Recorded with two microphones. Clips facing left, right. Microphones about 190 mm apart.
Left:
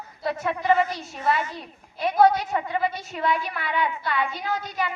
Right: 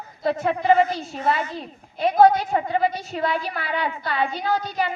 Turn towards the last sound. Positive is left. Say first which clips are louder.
# right 4 dB
turn(degrees=-35)  # may be behind; listen again after turning